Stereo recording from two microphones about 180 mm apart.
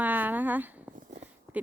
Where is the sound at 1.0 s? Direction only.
40° right (ahead or behind).